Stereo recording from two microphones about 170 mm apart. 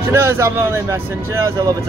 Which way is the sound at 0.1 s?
15° right (ahead or behind).